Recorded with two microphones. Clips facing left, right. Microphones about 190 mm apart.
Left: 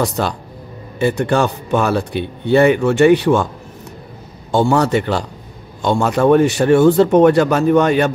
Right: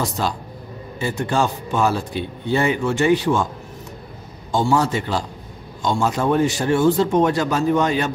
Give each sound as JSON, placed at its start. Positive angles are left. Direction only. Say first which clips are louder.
{"t": 0.2, "sound": "speech", "louder": "left 4 dB", "side_deg": 60}
{"t": 4.5, "sound": "speech", "louder": "left 5 dB", "side_deg": 65}